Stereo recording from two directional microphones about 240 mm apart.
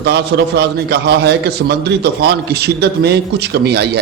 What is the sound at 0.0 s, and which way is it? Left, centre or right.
A man's voice, right.